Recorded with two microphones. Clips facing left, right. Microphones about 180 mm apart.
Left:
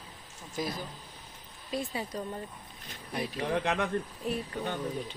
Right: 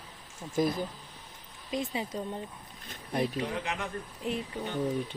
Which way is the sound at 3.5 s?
60° left (ahead or behind).